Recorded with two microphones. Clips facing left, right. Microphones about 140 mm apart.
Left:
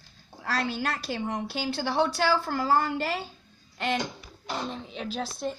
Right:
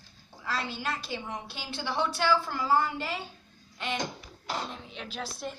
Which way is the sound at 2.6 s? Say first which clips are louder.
Left 3 dB; 70° left (ahead or behind).